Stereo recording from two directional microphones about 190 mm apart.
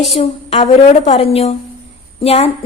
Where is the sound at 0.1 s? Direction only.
30° left (ahead or behind).